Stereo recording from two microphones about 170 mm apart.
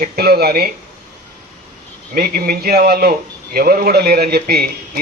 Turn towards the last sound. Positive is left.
turn(degrees=-65)  # may be behind; listen again after turning